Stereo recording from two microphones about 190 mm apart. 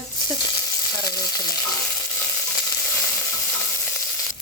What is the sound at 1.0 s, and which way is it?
Frying, 20° left (ahead or behind).